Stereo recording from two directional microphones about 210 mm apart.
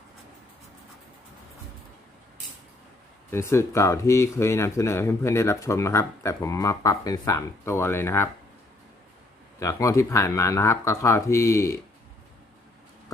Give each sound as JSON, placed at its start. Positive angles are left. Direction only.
{"t": 3.3, "sound": "speech", "side_deg": 10}
{"t": 9.6, "sound": "speech", "side_deg": 15}